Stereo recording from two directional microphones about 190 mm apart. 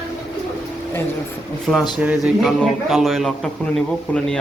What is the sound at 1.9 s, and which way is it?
A man's voice, centre (ahead or behind).